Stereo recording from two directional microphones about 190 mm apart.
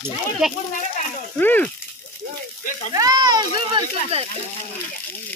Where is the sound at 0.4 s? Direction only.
5° right (ahead or behind).